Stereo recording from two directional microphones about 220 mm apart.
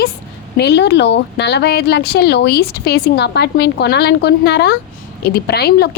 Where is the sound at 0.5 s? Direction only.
50° left (ahead or behind).